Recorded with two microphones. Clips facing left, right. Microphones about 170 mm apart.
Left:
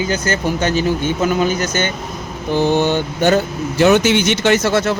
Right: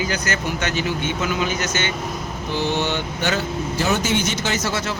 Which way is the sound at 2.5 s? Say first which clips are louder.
Left 8 dB; 50° left (ahead or behind).